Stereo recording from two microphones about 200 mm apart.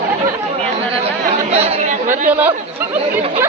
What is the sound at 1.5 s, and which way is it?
Speech, 30° right (ahead or behind).